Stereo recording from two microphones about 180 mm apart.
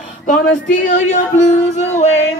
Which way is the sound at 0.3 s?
50° left (ahead or behind).